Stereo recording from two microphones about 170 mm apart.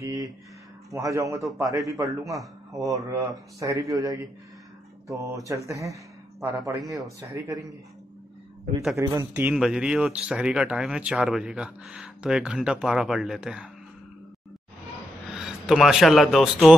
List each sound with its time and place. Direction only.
0.0 s a sound: 20° right (ahead or behind)
1.1 s a man's voice: 15° right (ahead or behind)
8.9 s a man's voice: 20° right (ahead or behind)
9.3 s speech: 10° right (ahead or behind)
15.3 s a man's voice: 5° right (ahead or behind)